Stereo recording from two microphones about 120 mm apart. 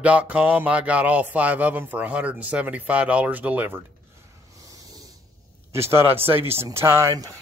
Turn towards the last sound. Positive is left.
turn(degrees=-25)  # may be behind; listen again after turning